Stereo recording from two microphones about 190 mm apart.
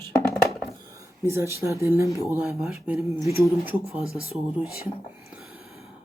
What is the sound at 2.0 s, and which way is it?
Speech, 20° left (ahead or behind).